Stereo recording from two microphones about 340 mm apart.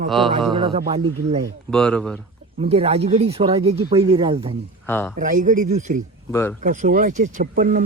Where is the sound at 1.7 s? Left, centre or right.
Centre.